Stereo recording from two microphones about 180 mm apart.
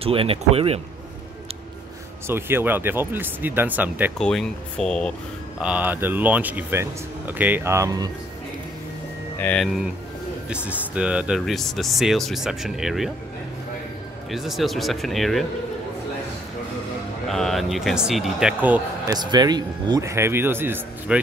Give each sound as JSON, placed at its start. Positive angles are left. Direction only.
{"t": 0.0, "sound": "speech", "side_deg": -30}
{"t": 2.2, "sound": "speech", "side_deg": -15}
{"t": 4.2, "sound": "speech", "side_deg": 5}
{"t": 5.6, "sound": "speech", "side_deg": -5}
{"t": 9.4, "sound": "speech", "side_deg": 5}
{"t": 14.3, "sound": "speech", "side_deg": 0}
{"t": 17.3, "sound": "speech", "side_deg": 0}
{"t": 19.1, "sound": "speech", "side_deg": -25}